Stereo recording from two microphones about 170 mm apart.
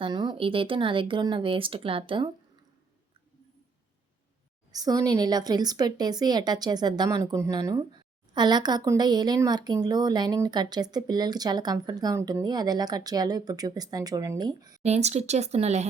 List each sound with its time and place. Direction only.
0.0 s speech: 25° right (ahead or behind)
4.7 s speech: 20° right (ahead or behind)
14.8 s speech: 40° right (ahead or behind)